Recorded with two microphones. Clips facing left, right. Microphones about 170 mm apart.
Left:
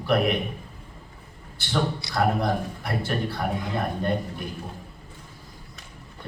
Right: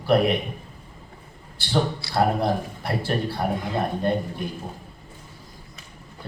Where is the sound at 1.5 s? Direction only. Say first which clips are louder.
Right 2 dB; 30° right (ahead or behind).